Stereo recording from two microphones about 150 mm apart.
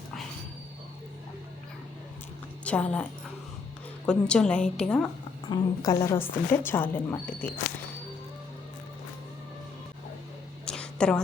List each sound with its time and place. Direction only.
2.6 s a woman's voice: 10° left (ahead or behind)
5.5 s a woman's voice: 25° left (ahead or behind)
10.7 s a sound: 5° left (ahead or behind)